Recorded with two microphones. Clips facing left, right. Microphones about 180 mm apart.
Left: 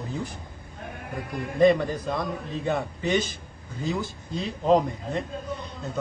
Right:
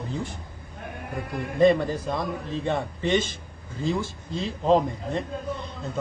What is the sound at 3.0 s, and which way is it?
Speech, 25° right (ahead or behind).